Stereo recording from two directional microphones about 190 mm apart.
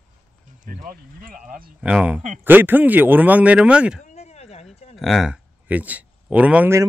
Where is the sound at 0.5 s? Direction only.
45° right (ahead or behind).